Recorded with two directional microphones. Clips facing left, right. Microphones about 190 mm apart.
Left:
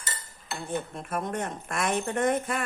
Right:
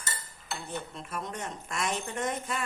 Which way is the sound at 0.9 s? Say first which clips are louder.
Left 6 dB; 50° left (ahead or behind).